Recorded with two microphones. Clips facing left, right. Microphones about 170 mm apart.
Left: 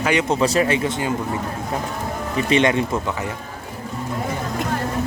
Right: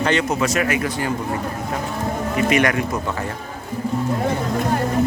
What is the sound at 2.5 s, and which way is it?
Speech, 25° left (ahead or behind).